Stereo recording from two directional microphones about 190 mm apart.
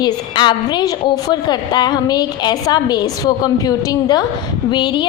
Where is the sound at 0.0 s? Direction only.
25° left (ahead or behind).